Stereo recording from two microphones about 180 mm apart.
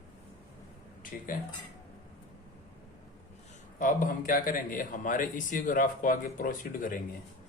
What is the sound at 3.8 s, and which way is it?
A man's voice, 50° left (ahead or behind).